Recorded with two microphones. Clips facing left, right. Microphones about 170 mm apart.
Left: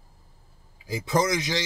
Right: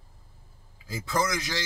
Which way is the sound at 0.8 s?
15° left (ahead or behind).